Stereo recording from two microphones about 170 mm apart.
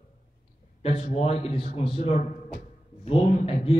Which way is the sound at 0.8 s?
35° left (ahead or behind).